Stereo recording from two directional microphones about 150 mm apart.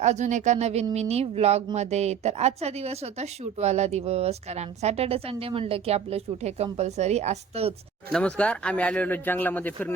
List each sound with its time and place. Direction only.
0.0 s speech: 50° right (ahead or behind)
8.1 s speech: 5° left (ahead or behind)